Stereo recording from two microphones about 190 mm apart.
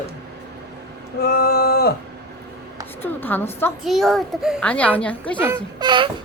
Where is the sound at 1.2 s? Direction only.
55° left (ahead or behind).